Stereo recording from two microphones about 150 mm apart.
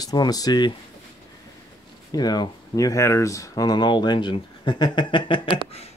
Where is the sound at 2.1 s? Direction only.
25° left (ahead or behind).